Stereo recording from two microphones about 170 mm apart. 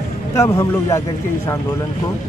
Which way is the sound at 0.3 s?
15° left (ahead or behind).